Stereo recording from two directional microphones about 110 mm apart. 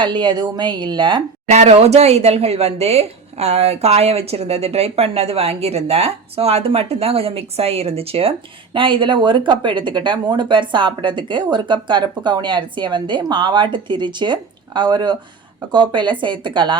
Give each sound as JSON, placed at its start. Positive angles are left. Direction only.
{"t": 0.0, "sound": "a woman's voice", "side_deg": -45}
{"t": 1.5, "sound": "a woman's voice", "side_deg": -90}